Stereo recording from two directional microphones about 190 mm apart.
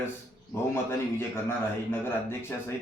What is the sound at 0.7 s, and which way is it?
A man's voice, 10° left (ahead or behind).